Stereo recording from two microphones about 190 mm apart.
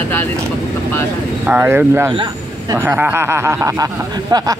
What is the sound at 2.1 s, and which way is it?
Speech, 25° right (ahead or behind).